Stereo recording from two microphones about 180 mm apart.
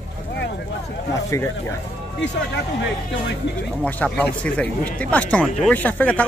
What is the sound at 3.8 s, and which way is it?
Speech, 5° left (ahead or behind).